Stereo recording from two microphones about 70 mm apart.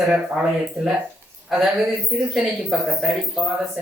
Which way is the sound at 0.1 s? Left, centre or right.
Centre.